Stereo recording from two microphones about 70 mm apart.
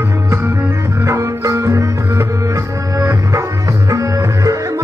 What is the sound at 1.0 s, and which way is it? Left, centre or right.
Music, right.